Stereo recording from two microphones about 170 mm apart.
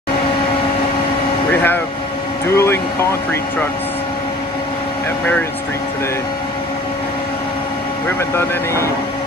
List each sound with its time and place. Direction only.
1.5 s speech: 10° left (ahead or behind)
2.5 s music: 15° left (ahead or behind)
8.4 s speech: 15° left (ahead or behind)